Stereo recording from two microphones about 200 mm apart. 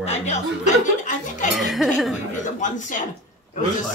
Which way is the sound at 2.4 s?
40° left (ahead or behind).